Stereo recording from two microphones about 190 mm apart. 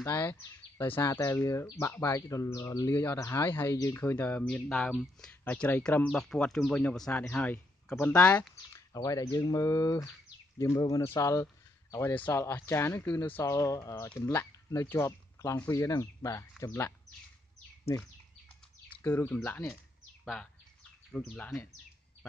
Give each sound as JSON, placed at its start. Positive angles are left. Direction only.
{"t": 0.0, "sound": "speech", "side_deg": 10}
{"t": 8.9, "sound": "speech", "side_deg": 20}
{"t": 19.0, "sound": "speech", "side_deg": 10}
{"t": 21.1, "sound": "speech", "side_deg": 5}